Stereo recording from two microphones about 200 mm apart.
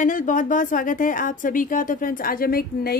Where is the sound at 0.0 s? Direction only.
40° left (ahead or behind).